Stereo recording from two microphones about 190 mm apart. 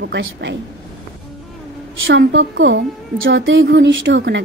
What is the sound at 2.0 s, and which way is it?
A woman's voice, 85° right.